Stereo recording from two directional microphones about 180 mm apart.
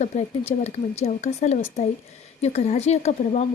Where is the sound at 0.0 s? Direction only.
35° left (ahead or behind).